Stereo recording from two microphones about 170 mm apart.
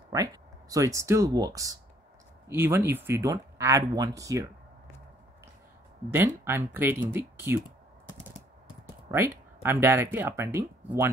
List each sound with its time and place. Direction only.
0.1 s speech: 20° right (ahead or behind)
6.0 s speech: 15° right (ahead or behind)
9.1 s speech: 15° right (ahead or behind)